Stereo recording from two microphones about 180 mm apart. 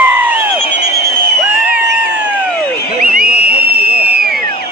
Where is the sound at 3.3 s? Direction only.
60° right (ahead or behind).